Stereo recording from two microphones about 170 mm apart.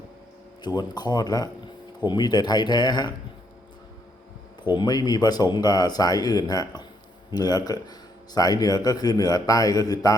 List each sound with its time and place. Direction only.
0.6 s speech: 25° left (ahead or behind)
4.7 s speech: 25° left (ahead or behind)